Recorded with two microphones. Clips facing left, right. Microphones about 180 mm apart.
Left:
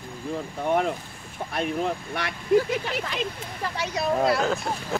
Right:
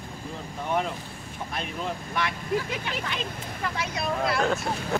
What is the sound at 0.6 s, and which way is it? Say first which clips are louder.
Speech: left 4 dB; 50° left (ahead or behind).